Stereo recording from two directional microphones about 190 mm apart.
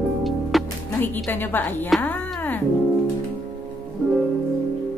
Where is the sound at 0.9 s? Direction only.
10° left (ahead or behind).